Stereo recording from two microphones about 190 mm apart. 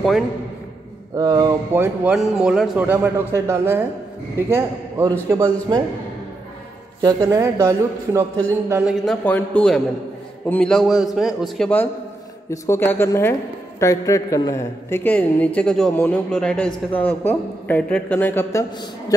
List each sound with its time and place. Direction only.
1.1 s a man's voice: 20° right (ahead or behind)
7.0 s a man's voice: 20° right (ahead or behind)
9.0 s a man's voice: 5° left (ahead or behind)